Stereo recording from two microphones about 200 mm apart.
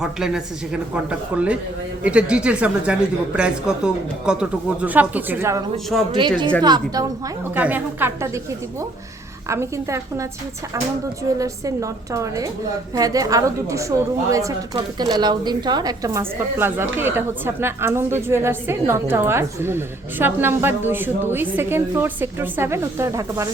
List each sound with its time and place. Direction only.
0.0 s a woman's voice: 5° right (ahead or behind)
2.0 s a woman's voice: 5° right (ahead or behind)
6.1 s a woman's voice: 25° right (ahead or behind)
7.5 s a woman's voice: 10° right (ahead or behind)
9.5 s a woman's voice: 15° right (ahead or behind)